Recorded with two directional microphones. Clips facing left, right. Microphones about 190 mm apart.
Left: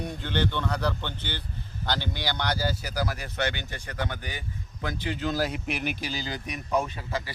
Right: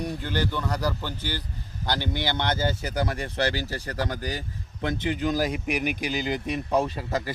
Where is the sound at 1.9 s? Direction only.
15° right (ahead or behind); by 4.4 s 40° right (ahead or behind).